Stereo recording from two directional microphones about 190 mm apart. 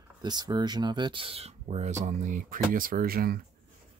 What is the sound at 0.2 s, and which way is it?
Speech, 20° right (ahead or behind).